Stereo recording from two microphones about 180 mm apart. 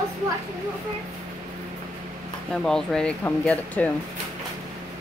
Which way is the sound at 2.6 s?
5° left (ahead or behind).